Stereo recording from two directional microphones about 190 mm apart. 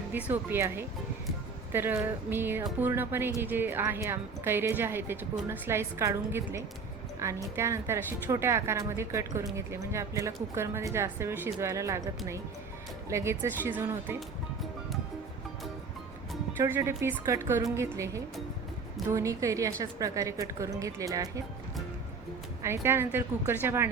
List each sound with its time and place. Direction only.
0.1 s a woman's voice: 10° right (ahead or behind)
16.6 s a woman's voice: 10° right (ahead or behind)
22.6 s a woman's voice: 15° right (ahead or behind)